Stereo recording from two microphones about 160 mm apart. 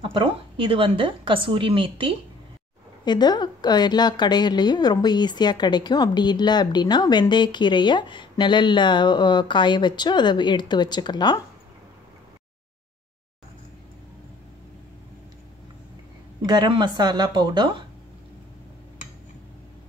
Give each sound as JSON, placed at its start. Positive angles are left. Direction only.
{"t": 0.0, "sound": "a woman's voice", "side_deg": -30}
{"t": 3.1, "sound": "a woman's voice", "side_deg": 25}
{"t": 16.4, "sound": "speech", "side_deg": -30}